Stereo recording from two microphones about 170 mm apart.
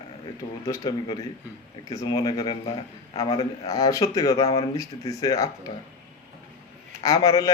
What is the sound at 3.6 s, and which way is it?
A man's voice, 20° left (ahead or behind).